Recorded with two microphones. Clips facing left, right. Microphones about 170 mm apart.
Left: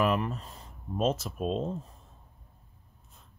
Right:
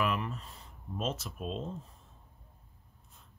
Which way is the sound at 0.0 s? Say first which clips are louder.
Left 5 dB; 40° left (ahead or behind).